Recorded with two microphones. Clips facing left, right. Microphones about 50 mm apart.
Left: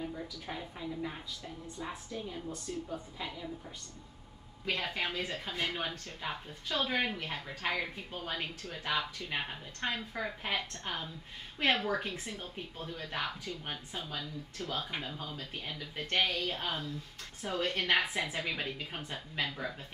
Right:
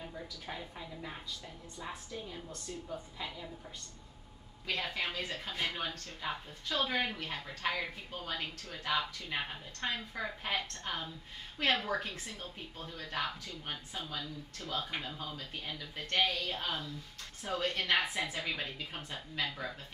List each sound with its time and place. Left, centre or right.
0.0 s a woman's voice: centre
4.6 s speech: centre
6.7 s a woman's voice: centre
7.1 s a woman's voice: centre